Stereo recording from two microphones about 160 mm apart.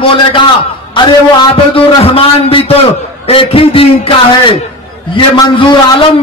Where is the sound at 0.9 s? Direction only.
35° left (ahead or behind).